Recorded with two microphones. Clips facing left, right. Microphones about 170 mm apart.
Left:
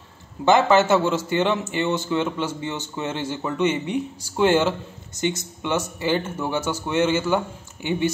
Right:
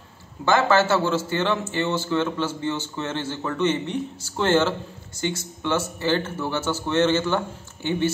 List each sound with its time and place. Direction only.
0.5 s a man's voice: 20° left (ahead or behind)